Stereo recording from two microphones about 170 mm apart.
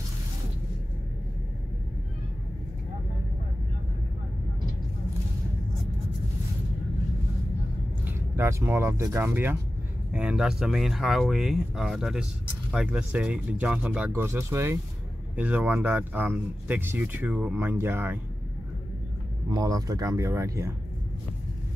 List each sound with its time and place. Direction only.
8.4 s speech: 15° right (ahead or behind)
19.5 s speech: 20° right (ahead or behind)